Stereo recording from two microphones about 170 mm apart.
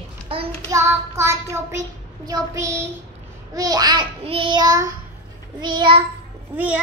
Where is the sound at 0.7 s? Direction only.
15° right (ahead or behind).